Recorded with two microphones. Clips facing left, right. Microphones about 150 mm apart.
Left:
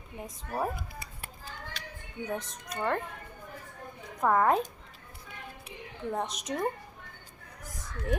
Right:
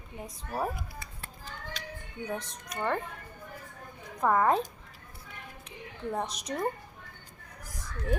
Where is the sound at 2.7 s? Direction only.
Centre (ahead or behind).